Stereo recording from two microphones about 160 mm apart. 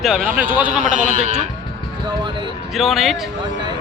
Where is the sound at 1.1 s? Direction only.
50° right (ahead or behind).